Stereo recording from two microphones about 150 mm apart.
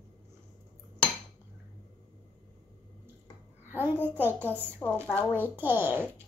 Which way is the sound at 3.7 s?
15° left (ahead or behind).